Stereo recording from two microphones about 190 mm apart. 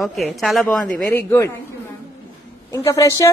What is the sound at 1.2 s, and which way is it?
Speech, 15° left (ahead or behind).